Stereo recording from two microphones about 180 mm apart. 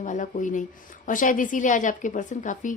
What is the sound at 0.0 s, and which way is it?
A woman's voice, 45° left (ahead or behind).